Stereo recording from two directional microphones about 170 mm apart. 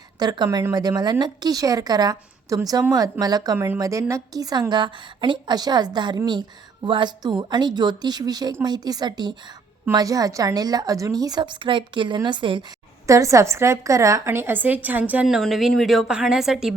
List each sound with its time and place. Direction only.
0.2 s a woman's voice: 25° right (ahead or behind)
13.1 s a woman's voice: 20° right (ahead or behind); by 16.7 s 5° right (ahead or behind)